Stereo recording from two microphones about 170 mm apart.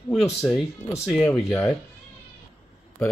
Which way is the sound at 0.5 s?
20° left (ahead or behind).